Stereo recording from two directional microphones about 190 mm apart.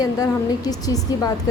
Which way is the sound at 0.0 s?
20° left (ahead or behind).